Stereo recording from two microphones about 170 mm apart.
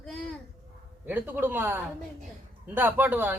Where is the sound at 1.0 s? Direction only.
10° right (ahead or behind).